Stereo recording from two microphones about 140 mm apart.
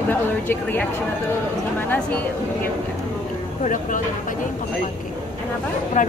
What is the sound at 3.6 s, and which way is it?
Speech, 70° left (ahead or behind).